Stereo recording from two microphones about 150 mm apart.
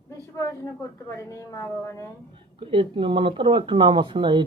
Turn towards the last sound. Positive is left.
turn(degrees=-30)  # may be behind; listen again after turning